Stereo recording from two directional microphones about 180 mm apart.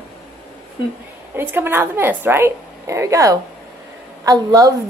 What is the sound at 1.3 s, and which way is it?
A woman's voice, 10° right (ahead or behind).